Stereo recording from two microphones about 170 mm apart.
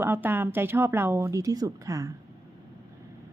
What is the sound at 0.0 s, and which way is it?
Speech, 10° right (ahead or behind).